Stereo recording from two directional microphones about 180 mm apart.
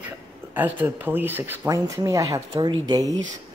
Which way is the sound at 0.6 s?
10° right (ahead or behind).